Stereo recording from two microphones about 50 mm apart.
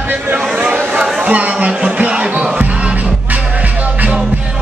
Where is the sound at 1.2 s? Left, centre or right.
Right.